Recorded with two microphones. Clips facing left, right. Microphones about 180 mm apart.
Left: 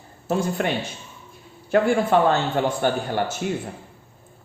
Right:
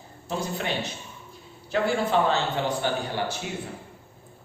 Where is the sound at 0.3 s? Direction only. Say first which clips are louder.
Left 6 dB; 50° left (ahead or behind).